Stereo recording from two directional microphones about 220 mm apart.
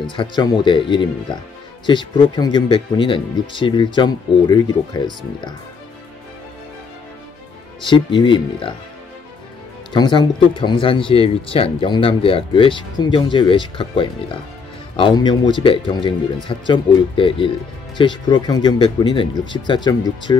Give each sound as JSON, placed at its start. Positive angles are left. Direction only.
{"t": 0.1, "sound": "speech", "side_deg": 20}
{"t": 7.8, "sound": "speech", "side_deg": 20}
{"t": 9.9, "sound": "speech", "side_deg": 20}